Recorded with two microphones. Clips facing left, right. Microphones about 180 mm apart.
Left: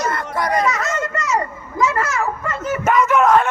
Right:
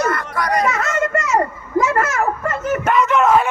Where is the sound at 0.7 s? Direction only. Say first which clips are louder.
Right 2 dB; 50° right (ahead or behind).